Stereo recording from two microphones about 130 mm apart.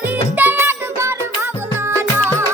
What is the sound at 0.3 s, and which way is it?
Music, 15° right (ahead or behind).